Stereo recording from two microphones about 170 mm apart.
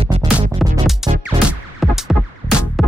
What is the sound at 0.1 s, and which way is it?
Music, 40° right (ahead or behind).